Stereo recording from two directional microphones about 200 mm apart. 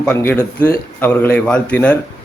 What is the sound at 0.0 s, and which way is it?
A man's voice, 10° left (ahead or behind).